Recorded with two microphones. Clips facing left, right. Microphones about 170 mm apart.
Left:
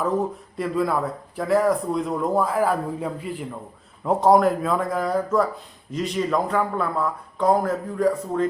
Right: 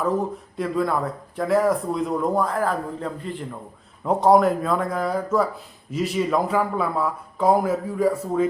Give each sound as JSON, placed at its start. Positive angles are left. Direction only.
{"t": 0.5, "sound": "speech", "side_deg": 0}